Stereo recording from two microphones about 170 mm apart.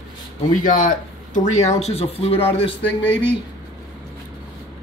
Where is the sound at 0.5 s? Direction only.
50° left (ahead or behind); by 2.5 s 35° left (ahead or behind).